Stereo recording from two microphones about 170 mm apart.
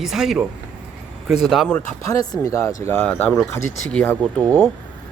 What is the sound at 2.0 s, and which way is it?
Speech, 20° left (ahead or behind).